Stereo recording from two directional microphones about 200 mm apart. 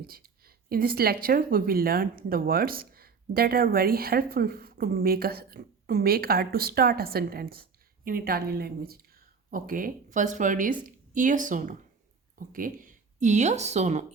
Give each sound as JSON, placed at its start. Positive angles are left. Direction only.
{"t": 0.0, "sound": "a woman's voice", "side_deg": -50}